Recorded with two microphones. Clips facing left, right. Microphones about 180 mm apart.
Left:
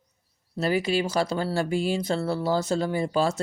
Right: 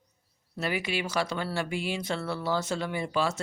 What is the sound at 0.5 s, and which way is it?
Speech, 35° left (ahead or behind).